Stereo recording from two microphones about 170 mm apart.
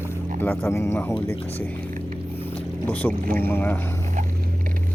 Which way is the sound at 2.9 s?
10° left (ahead or behind).